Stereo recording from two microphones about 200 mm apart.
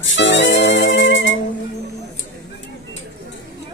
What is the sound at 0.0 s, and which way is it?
Music, 65° left (ahead or behind).